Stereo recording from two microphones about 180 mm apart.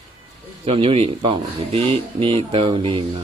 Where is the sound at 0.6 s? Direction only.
30° right (ahead or behind).